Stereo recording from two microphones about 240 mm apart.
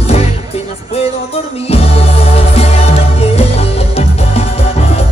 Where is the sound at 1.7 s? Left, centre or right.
Left.